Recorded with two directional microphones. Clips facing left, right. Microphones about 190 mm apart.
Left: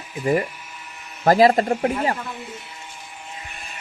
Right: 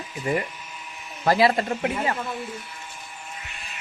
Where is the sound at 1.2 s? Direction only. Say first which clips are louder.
Left 5 dB; 45° left (ahead or behind).